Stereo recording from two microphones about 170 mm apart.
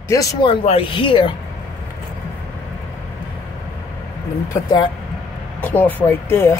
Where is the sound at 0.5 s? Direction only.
35° left (ahead or behind).